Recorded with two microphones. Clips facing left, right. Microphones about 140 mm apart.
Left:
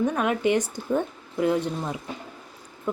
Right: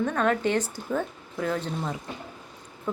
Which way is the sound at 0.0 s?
10° left (ahead or behind).